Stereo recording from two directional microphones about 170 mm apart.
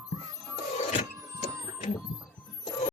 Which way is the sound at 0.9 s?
40° left (ahead or behind).